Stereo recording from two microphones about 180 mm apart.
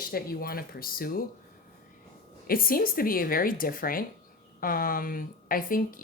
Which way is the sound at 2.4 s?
55° left (ahead or behind).